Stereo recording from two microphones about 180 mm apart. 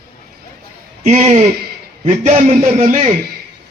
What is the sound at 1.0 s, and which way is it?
A man's voice, 40° right (ahead or behind).